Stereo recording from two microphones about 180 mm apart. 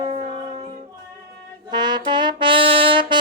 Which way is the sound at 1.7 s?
25° right (ahead or behind).